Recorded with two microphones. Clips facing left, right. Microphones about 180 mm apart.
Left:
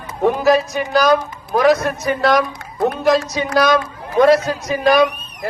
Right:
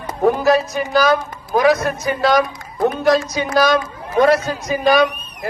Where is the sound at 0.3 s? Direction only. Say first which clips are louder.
Even; centre (ahead or behind).